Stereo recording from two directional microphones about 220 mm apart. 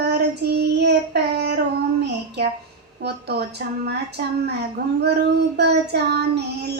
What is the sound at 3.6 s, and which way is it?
Child singing, 50° right (ahead or behind).